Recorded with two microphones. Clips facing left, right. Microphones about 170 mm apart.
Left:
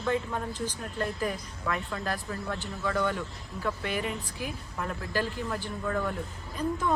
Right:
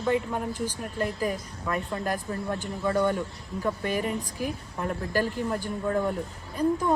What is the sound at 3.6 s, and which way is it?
Speech, 40° right (ahead or behind).